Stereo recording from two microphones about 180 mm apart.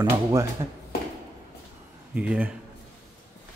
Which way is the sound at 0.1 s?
15° right (ahead or behind).